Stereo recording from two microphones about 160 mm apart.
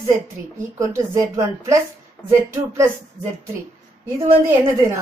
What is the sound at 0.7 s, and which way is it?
A woman's voice, 20° right (ahead or behind).